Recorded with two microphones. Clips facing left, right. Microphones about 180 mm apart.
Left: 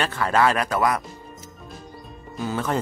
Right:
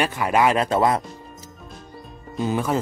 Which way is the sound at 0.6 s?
25° right (ahead or behind).